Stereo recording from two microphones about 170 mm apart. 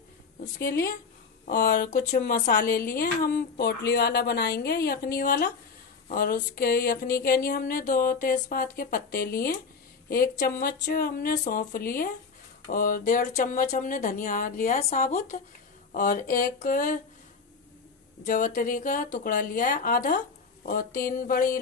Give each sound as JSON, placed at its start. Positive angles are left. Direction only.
{"t": 0.6, "sound": "speech", "side_deg": 70}
{"t": 1.5, "sound": "a woman's voice", "side_deg": 55}
{"t": 18.2, "sound": "a woman's voice", "side_deg": 50}